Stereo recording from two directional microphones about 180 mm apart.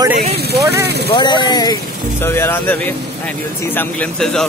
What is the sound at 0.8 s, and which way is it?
Speech, 65° right (ahead or behind).